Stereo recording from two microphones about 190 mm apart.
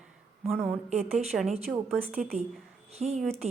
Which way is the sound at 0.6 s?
35° right (ahead or behind).